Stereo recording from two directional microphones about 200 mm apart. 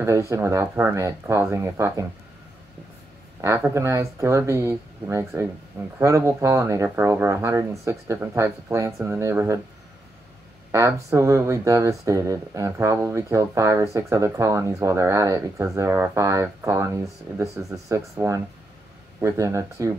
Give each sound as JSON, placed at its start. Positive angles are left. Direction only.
{"t": 0.0, "sound": "speech", "side_deg": -15}
{"t": 3.3, "sound": "speech", "side_deg": -15}
{"t": 10.7, "sound": "speech", "side_deg": -15}